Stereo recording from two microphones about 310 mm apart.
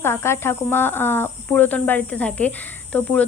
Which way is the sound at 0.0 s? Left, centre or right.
Centre.